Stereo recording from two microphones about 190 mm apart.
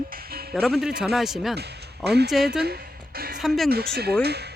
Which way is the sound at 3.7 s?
55° right (ahead or behind).